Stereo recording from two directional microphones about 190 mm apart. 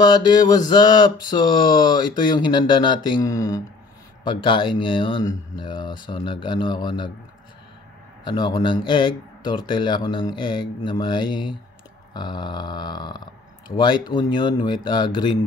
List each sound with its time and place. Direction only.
0.0 s speech: 20° left (ahead or behind)
8.2 s speech: 25° left (ahead or behind)